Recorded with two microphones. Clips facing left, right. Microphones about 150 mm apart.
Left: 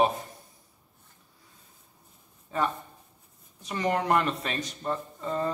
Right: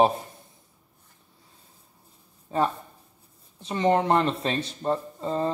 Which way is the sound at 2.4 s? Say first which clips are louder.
Right 4 dB; 30° right (ahead or behind).